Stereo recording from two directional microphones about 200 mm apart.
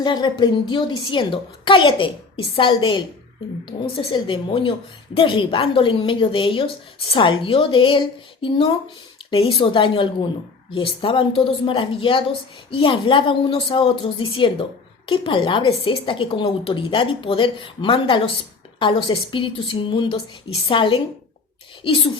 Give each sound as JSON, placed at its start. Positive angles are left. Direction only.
{"t": 0.0, "sound": "a woman's voice", "side_deg": 20}